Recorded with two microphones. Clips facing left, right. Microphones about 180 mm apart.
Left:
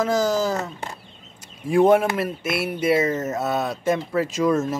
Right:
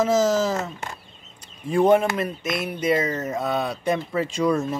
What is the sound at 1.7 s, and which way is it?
Speech, 5° left (ahead or behind).